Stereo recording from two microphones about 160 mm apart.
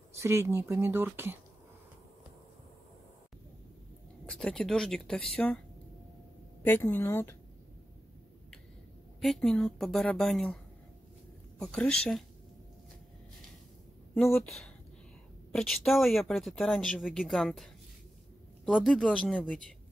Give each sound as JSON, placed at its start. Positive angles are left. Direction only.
{"t": 0.1, "sound": "speech", "side_deg": -15}
{"t": 4.3, "sound": "speech", "side_deg": 5}
{"t": 6.6, "sound": "a woman's voice", "side_deg": 15}
{"t": 9.2, "sound": "speech", "side_deg": 0}
{"t": 15.5, "sound": "speech", "side_deg": 0}
{"t": 18.7, "sound": "speech", "side_deg": 0}